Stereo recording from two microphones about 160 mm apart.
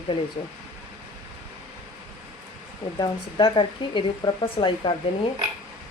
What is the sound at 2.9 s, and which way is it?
Speech, 30° left (ahead or behind).